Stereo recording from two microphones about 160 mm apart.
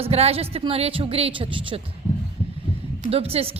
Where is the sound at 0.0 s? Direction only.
40° right (ahead or behind).